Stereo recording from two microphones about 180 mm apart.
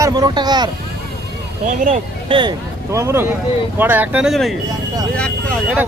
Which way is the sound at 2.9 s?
15° right (ahead or behind).